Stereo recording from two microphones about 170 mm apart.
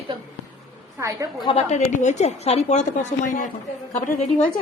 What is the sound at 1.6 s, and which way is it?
A woman's voice, 45° left (ahead or behind).